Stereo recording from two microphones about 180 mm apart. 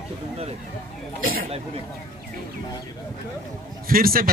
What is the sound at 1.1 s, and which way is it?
Speech, 55° right (ahead or behind).